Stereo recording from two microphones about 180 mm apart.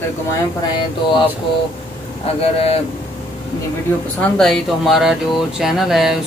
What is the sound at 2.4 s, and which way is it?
Speech, 35° left (ahead or behind).